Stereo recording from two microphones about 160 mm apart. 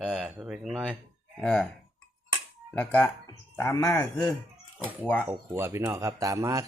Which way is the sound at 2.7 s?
10° left (ahead or behind).